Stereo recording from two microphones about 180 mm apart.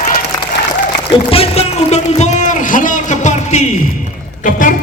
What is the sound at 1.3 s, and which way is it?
Music, 35° left (ahead or behind).